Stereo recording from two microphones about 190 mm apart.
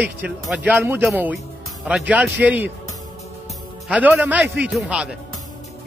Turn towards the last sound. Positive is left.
turn(degrees=-5)  # may be behind; listen again after turning